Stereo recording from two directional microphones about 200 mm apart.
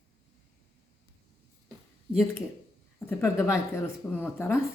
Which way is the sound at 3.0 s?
10° left (ahead or behind).